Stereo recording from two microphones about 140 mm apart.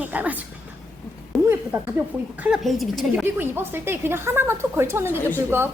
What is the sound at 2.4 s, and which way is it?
Speech, 5° right (ahead or behind).